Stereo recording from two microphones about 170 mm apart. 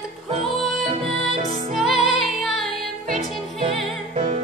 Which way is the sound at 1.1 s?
35° right (ahead or behind).